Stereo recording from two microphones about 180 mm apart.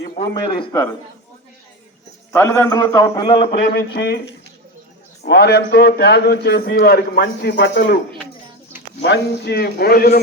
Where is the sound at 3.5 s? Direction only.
65° left (ahead or behind).